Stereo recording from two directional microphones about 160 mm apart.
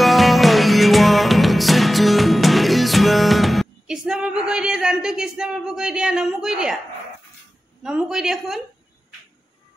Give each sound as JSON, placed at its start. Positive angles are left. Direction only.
{"t": 0.0, "sound": "music", "side_deg": 0}
{"t": 7.8, "sound": "a woman's voice", "side_deg": -5}